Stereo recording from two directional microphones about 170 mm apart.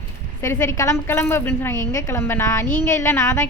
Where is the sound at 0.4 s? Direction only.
15° left (ahead or behind).